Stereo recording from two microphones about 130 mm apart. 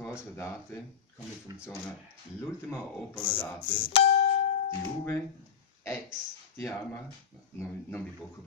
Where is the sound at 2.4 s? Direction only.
20° left (ahead or behind).